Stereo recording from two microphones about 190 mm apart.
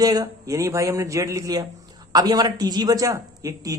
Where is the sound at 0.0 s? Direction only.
20° right (ahead or behind).